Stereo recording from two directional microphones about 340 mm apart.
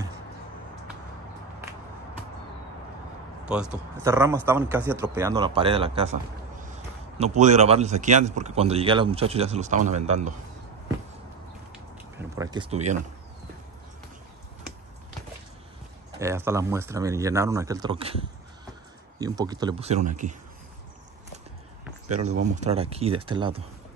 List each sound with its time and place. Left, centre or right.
4.0 s speech: centre
7.3 s speech: centre
11.7 s a sound: centre
16.2 s speech: centre
22.1 s speech: right